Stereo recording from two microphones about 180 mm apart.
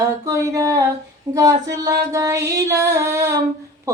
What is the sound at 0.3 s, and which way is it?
Mantra, 15° right (ahead or behind).